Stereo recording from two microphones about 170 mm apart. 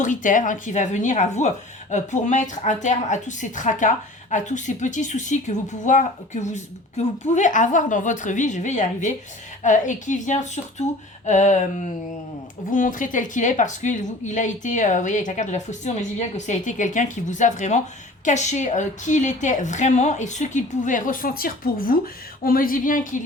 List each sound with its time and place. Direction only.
0.0 s a woman's voice: 50° left (ahead or behind)